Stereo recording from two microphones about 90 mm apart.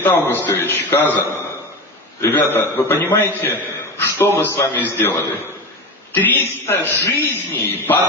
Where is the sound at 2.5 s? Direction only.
20° left (ahead or behind).